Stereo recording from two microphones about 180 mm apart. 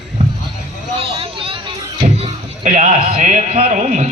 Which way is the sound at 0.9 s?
30° right (ahead or behind).